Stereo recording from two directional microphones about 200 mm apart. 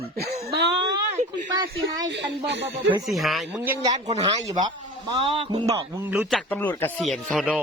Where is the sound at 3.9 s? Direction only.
30° right (ahead or behind).